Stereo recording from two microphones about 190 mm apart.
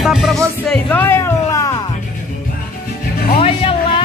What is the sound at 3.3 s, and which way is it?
Music, 30° left (ahead or behind).